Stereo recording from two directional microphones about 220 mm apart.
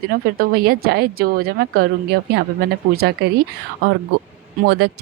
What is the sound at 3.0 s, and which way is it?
Speech, 45° right (ahead or behind).